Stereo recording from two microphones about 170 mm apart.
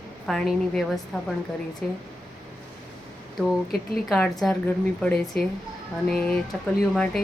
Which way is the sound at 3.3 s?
Centre (ahead or behind).